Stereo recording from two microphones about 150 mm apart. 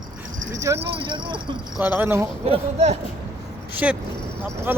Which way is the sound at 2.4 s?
45° right (ahead or behind).